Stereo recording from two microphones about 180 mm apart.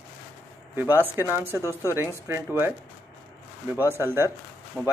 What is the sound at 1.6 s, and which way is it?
Speech, 15° left (ahead or behind).